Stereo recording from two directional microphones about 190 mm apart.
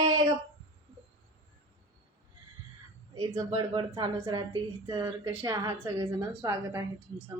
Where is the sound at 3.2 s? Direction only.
20° right (ahead or behind).